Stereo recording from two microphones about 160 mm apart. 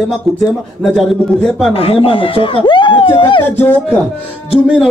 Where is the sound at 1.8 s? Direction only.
35° left (ahead or behind).